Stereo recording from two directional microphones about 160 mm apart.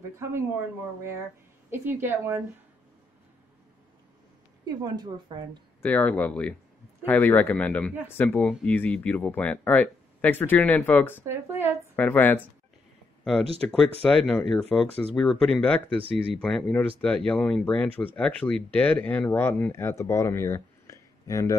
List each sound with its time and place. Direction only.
1.7 s a woman's voice: 15° right (ahead or behind)
4.6 s a woman's voice: 25° right (ahead or behind)
5.8 s speech: 10° left (ahead or behind)
11.2 s a woman's voice: 15° right (ahead or behind)
11.9 s speech: 10° left (ahead or behind)